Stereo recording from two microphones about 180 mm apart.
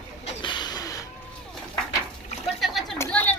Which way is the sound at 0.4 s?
25° left (ahead or behind).